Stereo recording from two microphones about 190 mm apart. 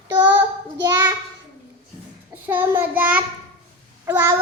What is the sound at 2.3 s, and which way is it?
Child singing, 10° right (ahead or behind).